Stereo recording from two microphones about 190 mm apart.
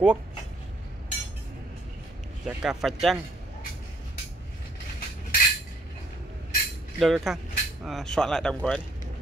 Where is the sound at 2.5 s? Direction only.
5° right (ahead or behind).